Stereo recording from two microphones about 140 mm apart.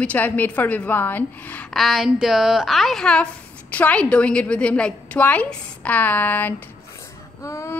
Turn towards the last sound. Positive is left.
turn(degrees=20)  # may be behind; listen again after turning